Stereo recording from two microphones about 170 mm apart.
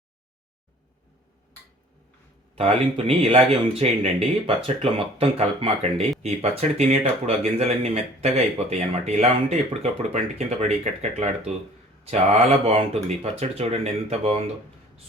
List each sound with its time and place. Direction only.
2.6 s speech: 35° right (ahead or behind)